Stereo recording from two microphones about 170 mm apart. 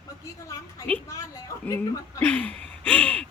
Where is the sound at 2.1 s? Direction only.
10° left (ahead or behind).